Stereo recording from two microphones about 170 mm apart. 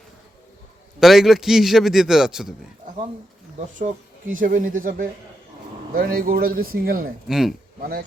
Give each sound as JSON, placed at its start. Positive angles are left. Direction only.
{"t": 0.9, "sound": "a man's voice", "side_deg": 0}
{"t": 3.8, "sound": "speech", "side_deg": -50}
{"t": 7.3, "sound": "a man's voice", "side_deg": -5}
{"t": 7.8, "sound": "speech", "side_deg": -65}